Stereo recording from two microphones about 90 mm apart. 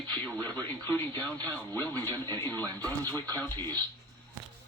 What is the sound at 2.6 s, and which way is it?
Speech, 50° right (ahead or behind).